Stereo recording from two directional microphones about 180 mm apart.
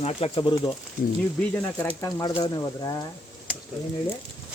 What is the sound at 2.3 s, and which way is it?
Speech, 20° left (ahead or behind).